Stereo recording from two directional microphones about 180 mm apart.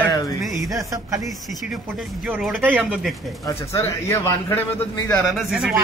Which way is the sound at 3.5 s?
15° left (ahead or behind).